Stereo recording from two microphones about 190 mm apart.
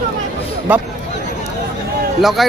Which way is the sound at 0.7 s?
10° right (ahead or behind).